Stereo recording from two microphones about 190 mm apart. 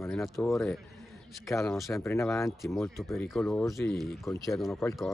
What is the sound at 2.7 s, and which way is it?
Speech, centre (ahead or behind).